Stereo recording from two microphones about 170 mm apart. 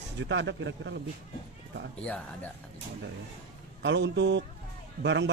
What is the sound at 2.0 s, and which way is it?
Speech, 5° left (ahead or behind).